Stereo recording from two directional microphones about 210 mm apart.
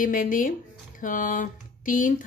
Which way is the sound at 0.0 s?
40° left (ahead or behind).